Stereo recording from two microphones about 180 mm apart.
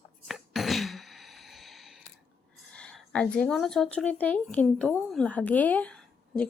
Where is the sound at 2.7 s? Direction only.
5° left (ahead or behind).